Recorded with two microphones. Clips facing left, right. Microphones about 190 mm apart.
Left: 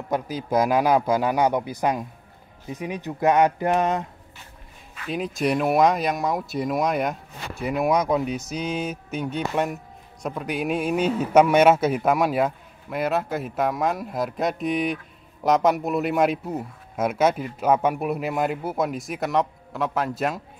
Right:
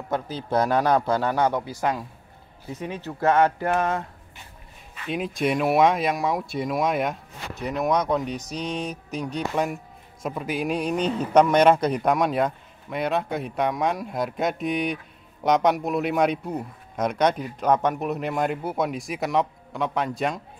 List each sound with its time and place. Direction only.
0.1 s speech: 10° left (ahead or behind)
4.9 s speech: centre (ahead or behind)